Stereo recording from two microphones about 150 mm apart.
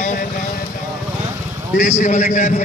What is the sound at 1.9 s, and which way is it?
Speech, 50° left (ahead or behind).